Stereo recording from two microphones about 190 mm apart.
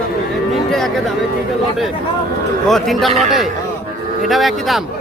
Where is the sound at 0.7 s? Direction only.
Centre (ahead or behind).